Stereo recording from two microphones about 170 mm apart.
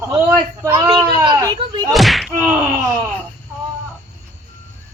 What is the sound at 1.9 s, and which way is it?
Speech, centre (ahead or behind).